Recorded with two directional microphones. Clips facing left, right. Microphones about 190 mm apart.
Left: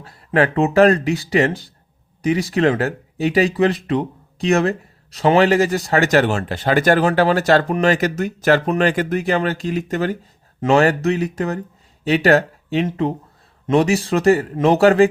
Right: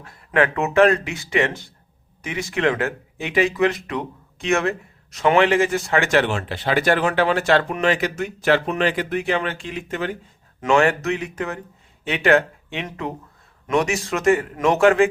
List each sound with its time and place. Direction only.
0.0 s speech: 35° left (ahead or behind)